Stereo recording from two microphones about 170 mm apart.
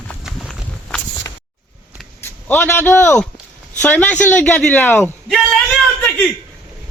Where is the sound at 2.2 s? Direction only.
10° left (ahead or behind).